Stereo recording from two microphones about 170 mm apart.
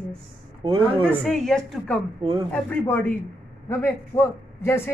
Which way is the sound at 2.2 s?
30° right (ahead or behind).